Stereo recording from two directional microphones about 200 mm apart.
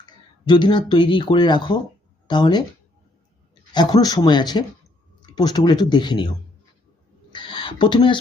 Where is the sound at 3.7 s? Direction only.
20° left (ahead or behind).